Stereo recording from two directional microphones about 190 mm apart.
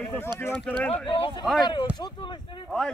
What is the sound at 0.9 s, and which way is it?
Speech, 25° left (ahead or behind).